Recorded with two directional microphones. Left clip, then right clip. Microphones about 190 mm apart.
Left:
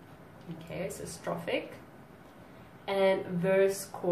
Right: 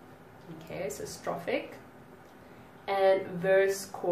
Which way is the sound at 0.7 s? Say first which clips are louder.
Right 2 dB; 10° right (ahead or behind).